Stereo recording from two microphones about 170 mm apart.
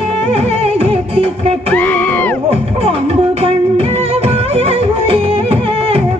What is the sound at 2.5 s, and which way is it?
Music, 35° right (ahead or behind).